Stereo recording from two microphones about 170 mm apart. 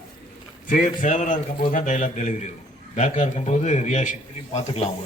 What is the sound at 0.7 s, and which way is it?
A man's voice, 50° left (ahead or behind).